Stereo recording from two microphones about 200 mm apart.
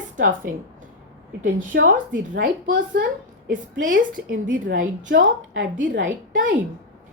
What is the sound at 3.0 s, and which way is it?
Speech, 55° right (ahead or behind).